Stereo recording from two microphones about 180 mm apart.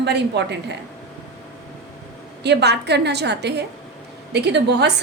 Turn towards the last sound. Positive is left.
turn(degrees=-70)  # may be behind; listen again after turning